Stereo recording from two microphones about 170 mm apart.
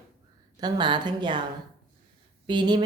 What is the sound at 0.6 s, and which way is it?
Speech, 25° right (ahead or behind).